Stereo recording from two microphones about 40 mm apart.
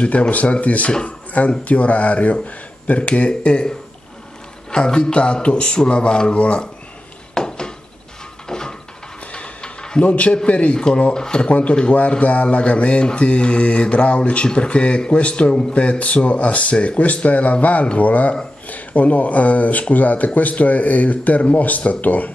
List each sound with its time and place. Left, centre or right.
0.0 s speech: left
3.0 s mantra: left
7.3 s a sound: centre
9.3 s mechanisms: left
10.0 s speech: left
11.1 s mantra: centre
11.4 s speech: left
11.7 s mantra: left
17.9 s speech: left